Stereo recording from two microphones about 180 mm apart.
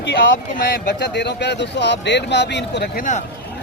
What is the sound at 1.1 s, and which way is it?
Speech, 70° left (ahead or behind).